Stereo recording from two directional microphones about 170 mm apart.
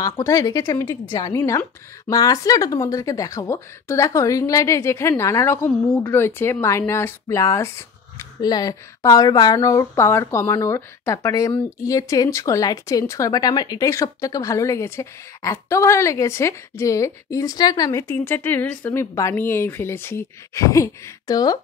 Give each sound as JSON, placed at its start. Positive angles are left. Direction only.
{"t": 0.0, "sound": "a woman's voice", "side_deg": 20}